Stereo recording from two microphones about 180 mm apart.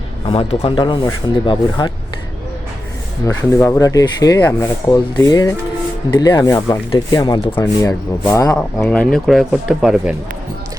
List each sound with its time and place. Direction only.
0.3 s speech: 35° left (ahead or behind)
3.2 s speech: 15° left (ahead or behind)
8.8 s speech: 5° left (ahead or behind)